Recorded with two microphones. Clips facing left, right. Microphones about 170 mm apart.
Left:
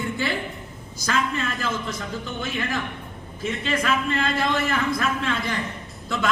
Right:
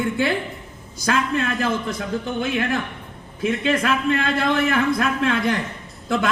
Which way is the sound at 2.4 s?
55° right (ahead or behind).